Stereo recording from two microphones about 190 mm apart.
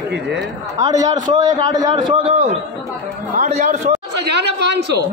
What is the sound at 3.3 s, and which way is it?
Speech, 40° right (ahead or behind).